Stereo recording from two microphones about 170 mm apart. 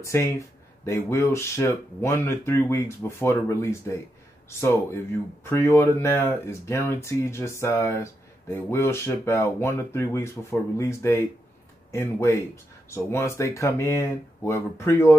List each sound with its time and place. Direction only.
0.0 s speech: 15° left (ahead or behind)